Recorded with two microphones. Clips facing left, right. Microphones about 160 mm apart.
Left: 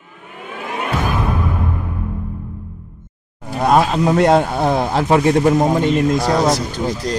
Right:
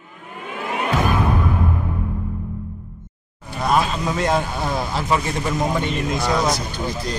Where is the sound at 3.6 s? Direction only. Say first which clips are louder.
Left 6 dB; 60° left (ahead or behind).